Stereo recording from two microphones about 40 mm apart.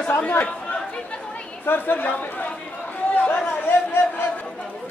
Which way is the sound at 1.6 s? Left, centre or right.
Left.